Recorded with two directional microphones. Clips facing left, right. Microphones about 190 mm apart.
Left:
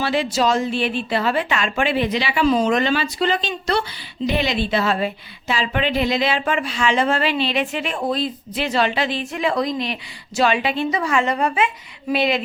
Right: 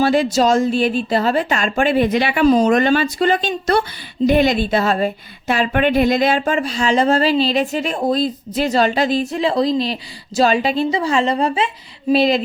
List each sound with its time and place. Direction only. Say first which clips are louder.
0.0 s a woman's voice: right 5 dB; 45° right (ahead or behind)